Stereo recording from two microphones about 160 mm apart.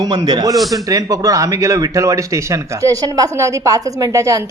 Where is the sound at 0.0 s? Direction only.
25° right (ahead or behind).